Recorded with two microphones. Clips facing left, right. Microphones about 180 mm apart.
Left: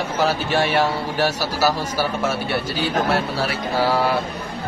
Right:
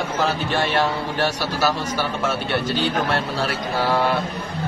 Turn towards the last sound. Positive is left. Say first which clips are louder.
# left 2 dB
turn(degrees=10)  # may be behind; listen again after turning